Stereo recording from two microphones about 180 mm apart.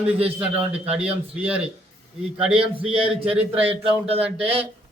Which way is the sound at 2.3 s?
5° right (ahead or behind).